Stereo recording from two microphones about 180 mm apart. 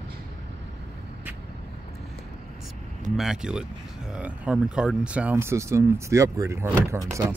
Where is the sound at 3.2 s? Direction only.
5° right (ahead or behind).